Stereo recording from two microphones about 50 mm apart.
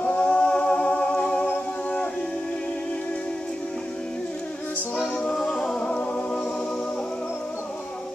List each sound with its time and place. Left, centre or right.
0.0 s music: left
4.9 s music: centre
5.8 s music: left